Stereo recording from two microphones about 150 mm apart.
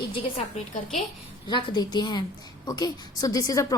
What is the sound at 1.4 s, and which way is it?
A woman's voice, 30° left (ahead or behind).